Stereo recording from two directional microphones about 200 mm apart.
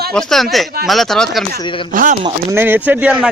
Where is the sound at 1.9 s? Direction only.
40° right (ahead or behind).